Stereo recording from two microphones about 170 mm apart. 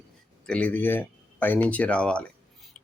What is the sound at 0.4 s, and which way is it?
Speech, 10° left (ahead or behind).